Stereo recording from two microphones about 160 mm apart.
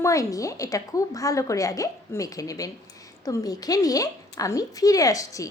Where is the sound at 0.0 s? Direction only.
20° left (ahead or behind).